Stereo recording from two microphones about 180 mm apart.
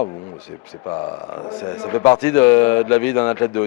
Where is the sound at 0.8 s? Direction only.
25° left (ahead or behind).